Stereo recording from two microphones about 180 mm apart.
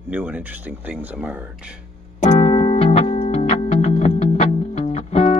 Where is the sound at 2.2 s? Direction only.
30° left (ahead or behind).